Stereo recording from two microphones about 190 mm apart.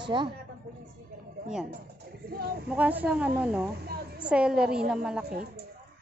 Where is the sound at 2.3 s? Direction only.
55° right (ahead or behind).